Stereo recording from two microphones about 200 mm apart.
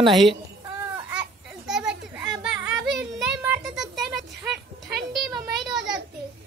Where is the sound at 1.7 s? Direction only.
5° right (ahead or behind).